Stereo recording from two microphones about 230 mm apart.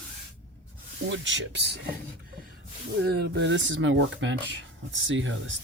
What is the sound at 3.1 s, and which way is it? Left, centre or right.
Speech, right.